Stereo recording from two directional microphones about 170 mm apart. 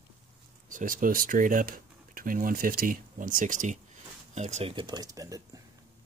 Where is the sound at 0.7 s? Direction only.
50° right (ahead or behind); by 5.4 s 20° right (ahead or behind).